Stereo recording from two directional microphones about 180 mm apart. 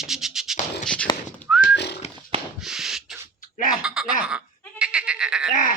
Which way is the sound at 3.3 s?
50° left (ahead or behind).